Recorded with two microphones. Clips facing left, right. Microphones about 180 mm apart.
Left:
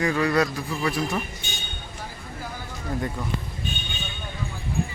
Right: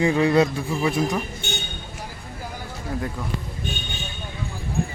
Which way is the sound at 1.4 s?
70° right (ahead or behind).